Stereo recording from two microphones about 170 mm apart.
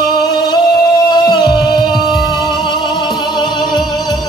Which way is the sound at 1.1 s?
25° left (ahead or behind).